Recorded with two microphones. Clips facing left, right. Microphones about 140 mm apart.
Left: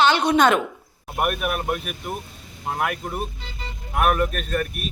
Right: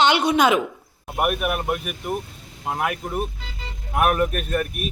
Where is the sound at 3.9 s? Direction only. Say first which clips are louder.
Right 1 dB; 10° right (ahead or behind).